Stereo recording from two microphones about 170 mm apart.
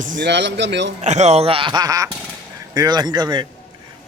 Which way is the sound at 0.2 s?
90° right.